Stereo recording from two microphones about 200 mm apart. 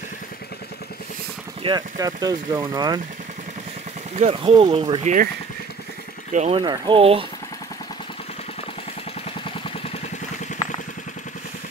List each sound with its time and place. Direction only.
1.6 s speech: 20° right (ahead or behind)
4.2 s speech: 30° right (ahead or behind)
5.0 s speech: 40° right (ahead or behind)
6.3 s speech: 35° right (ahead or behind)
6.6 s speech: 25° right (ahead or behind)